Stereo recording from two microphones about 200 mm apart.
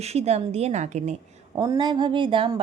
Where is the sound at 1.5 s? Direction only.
20° right (ahead or behind).